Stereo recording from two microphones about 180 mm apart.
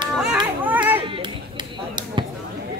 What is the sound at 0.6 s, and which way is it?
Children playing, 10° right (ahead or behind).